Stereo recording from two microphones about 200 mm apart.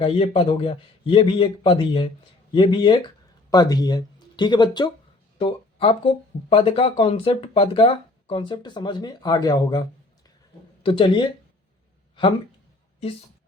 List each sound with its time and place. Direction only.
0.0 s speech: 25° left (ahead or behind)
10.8 s speech: 25° left (ahead or behind)